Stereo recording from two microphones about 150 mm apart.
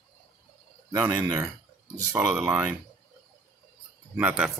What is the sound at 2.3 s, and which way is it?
Speech, 15° right (ahead or behind).